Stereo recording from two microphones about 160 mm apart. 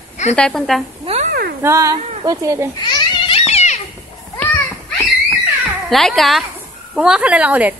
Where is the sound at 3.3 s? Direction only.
40° left (ahead or behind).